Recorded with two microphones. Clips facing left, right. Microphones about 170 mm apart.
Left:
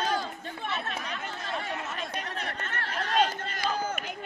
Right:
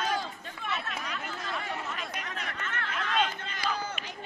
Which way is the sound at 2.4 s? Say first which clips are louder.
Left 1 dB; 35° left (ahead or behind).